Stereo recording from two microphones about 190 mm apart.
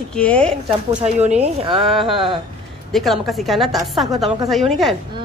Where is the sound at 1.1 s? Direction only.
35° right (ahead or behind).